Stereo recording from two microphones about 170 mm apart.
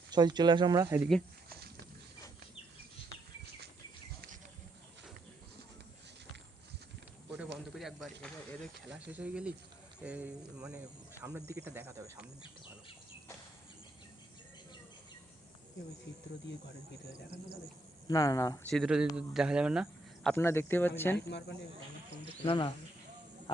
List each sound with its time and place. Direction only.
0.1 s speech: 25° right (ahead or behind)
7.8 s a sound: centre (ahead or behind)
9.1 s speech: 5° right (ahead or behind)
18.1 s speech: 20° left (ahead or behind)
18.6 s speech: centre (ahead or behind)
20.3 s speech: 15° left (ahead or behind)
21.2 s speech: 75° left (ahead or behind)
22.4 s speech: 25° left (ahead or behind)